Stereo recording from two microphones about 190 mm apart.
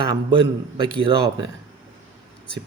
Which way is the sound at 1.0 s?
25° right (ahead or behind).